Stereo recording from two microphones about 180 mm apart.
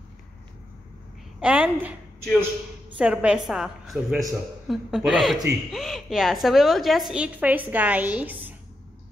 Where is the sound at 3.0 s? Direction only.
5° right (ahead or behind).